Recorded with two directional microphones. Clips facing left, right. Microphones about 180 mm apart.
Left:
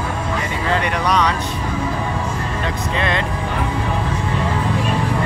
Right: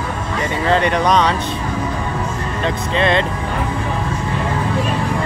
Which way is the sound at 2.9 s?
25° right (ahead or behind).